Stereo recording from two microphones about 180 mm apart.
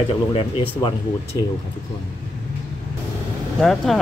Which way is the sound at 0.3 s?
30° left (ahead or behind).